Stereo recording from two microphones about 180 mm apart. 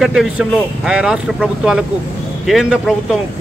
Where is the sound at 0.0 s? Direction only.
5° right (ahead or behind).